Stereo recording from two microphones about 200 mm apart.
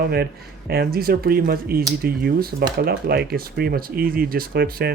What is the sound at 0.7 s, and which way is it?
Speech, 50° right (ahead or behind).